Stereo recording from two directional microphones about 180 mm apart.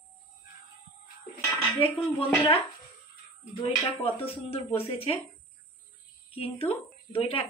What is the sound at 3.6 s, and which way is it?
Speech, 30° left (ahead or behind).